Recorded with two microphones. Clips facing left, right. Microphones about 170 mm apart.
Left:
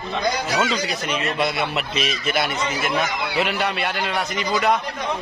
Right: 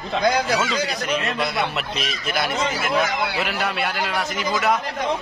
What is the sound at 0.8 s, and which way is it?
A man's voice, centre (ahead or behind).